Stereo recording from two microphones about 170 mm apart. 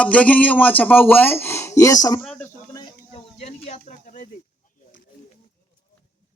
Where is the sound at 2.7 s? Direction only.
30° left (ahead or behind); by 4.2 s 45° left (ahead or behind).